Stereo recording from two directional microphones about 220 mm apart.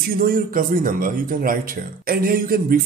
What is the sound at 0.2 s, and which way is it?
Speech, 40° right (ahead or behind).